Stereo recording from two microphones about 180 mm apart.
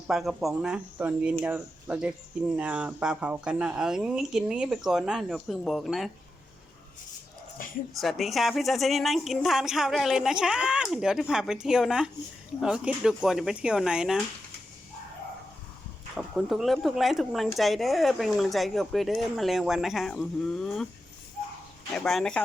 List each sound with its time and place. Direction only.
0.1 s speech: 5° right (ahead or behind)
7.6 s speech: 50° left (ahead or behind)
8.0 s speech: centre (ahead or behind)
16.1 s speech: centre (ahead or behind)
21.9 s speech: centre (ahead or behind)